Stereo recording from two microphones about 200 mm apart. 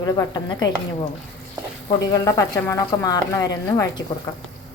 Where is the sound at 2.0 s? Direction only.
20° left (ahead or behind).